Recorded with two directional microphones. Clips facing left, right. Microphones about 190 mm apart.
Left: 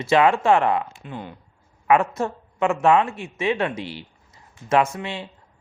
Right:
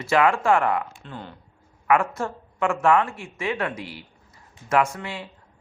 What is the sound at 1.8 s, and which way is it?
Speech, 20° left (ahead or behind).